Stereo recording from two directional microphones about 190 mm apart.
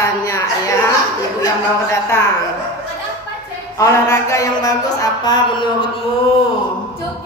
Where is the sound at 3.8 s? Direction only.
15° left (ahead or behind).